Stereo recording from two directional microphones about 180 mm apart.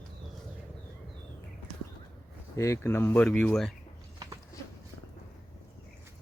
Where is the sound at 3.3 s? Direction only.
5° left (ahead or behind).